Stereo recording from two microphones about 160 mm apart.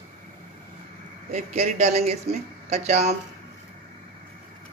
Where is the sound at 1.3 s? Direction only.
45° right (ahead or behind).